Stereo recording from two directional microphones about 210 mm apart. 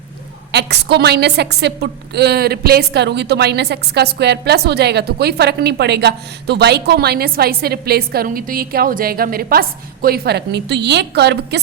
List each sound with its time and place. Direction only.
0.5 s a woman's voice: 50° right (ahead or behind)